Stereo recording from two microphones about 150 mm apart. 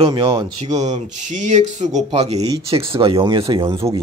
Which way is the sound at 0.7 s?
50° right (ahead or behind).